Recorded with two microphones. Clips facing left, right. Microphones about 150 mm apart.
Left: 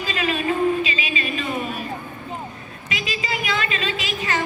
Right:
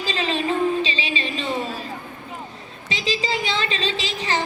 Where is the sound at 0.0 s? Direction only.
25° right (ahead or behind).